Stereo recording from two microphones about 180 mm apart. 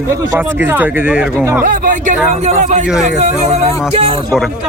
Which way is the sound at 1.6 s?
45° right (ahead or behind).